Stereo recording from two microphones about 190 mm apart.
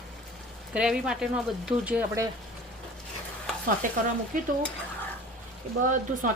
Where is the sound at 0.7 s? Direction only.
5° right (ahead or behind).